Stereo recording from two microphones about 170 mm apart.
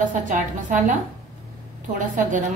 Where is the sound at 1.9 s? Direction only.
50° right (ahead or behind).